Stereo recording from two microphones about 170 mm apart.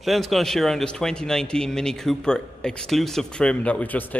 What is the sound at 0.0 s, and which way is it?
Speech, centre (ahead or behind).